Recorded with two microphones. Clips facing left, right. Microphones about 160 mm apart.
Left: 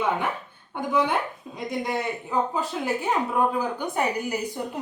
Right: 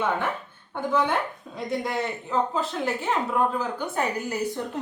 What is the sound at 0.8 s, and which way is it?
A woman's voice, 15° left (ahead or behind).